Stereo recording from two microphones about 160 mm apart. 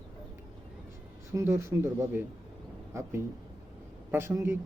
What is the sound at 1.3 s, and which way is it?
Speech, 15° right (ahead or behind).